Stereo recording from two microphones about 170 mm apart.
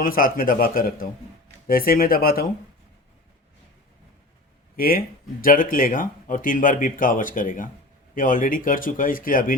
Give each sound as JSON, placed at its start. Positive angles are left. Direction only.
{"t": 0.0, "sound": "speech", "side_deg": 55}
{"t": 4.8, "sound": "speech", "side_deg": 55}